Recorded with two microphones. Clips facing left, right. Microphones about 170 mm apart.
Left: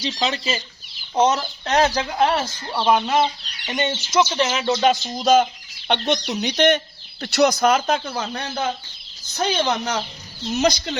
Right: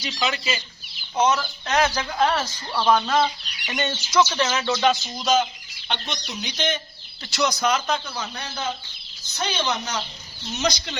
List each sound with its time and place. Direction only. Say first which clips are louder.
0.0 s speech: left 3 dB; 30° left (ahead or behind)
5.1 s speech: left 5 dB; 55° left (ahead or behind)